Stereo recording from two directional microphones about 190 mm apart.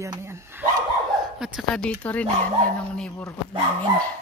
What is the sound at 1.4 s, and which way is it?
Speech, centre (ahead or behind).